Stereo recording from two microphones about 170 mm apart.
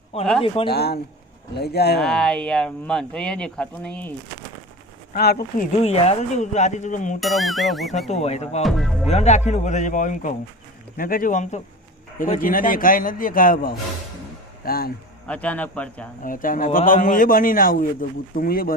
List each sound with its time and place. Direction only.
0.4 s speech: 35° left (ahead or behind)
0.7 s a man's voice: 70° left (ahead or behind)
2.0 s speech: 5° left (ahead or behind)
5.1 s a man's voice: 65° left (ahead or behind)
5.7 s a man's voice: 40° left (ahead or behind)
7.2 s speech: centre (ahead or behind)
8.1 s speech: 40° left (ahead or behind)
8.6 s speech: centre (ahead or behind)
9.0 s a man's voice: 40° left (ahead or behind); by 14.9 s 60° left (ahead or behind)
15.3 s speech: 10° left (ahead or behind)
16.2 s a man's voice: 55° left (ahead or behind)